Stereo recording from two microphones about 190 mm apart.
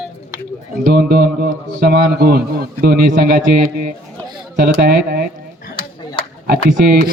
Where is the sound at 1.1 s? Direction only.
50° right (ahead or behind).